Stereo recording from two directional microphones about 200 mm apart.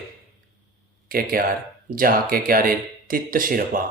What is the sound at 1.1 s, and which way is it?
Speech, 45° right (ahead or behind).